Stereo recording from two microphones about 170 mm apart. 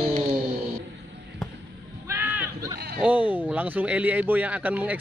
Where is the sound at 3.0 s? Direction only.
10° right (ahead or behind).